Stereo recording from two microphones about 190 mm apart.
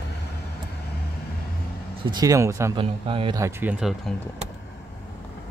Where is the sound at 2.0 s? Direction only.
20° right (ahead or behind).